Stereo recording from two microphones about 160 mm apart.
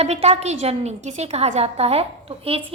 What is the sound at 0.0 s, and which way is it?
A woman's voice, 40° right (ahead or behind).